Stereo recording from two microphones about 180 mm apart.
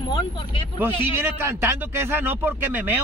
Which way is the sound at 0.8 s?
10° right (ahead or behind).